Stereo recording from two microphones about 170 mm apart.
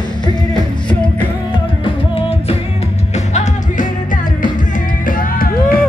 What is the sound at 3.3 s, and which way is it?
Music, 50° left (ahead or behind).